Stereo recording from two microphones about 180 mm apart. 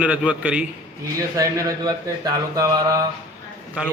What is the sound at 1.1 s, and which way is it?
Speech, 20° right (ahead or behind).